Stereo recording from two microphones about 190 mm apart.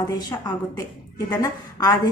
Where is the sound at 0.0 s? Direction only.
20° left (ahead or behind).